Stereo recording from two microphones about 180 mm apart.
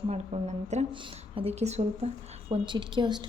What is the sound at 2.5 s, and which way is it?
Speech, 25° right (ahead or behind).